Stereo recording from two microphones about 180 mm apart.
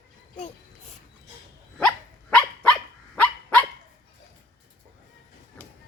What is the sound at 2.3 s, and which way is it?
Dog, 5° left (ahead or behind).